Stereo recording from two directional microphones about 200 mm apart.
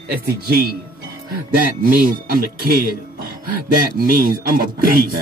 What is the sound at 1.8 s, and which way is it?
Speech, 45° right (ahead or behind).